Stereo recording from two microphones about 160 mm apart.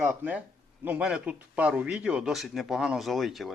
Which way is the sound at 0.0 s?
10° right (ahead or behind).